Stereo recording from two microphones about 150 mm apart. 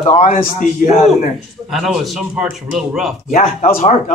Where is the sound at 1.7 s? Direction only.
Centre (ahead or behind).